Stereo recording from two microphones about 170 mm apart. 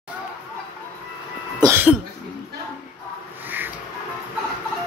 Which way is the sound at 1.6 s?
15° right (ahead or behind).